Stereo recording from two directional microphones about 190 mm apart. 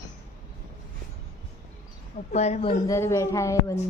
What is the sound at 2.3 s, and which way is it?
Speech, 35° left (ahead or behind).